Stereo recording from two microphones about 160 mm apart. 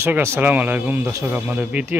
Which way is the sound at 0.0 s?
15° right (ahead or behind).